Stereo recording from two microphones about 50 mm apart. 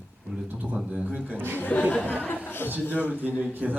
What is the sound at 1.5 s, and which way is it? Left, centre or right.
Speech, left.